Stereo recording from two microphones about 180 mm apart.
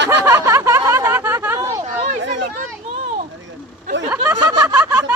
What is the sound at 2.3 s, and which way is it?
Children playing, 45° right (ahead or behind).